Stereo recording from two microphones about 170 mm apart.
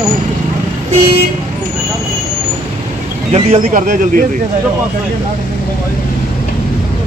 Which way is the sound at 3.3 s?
40° right (ahead or behind).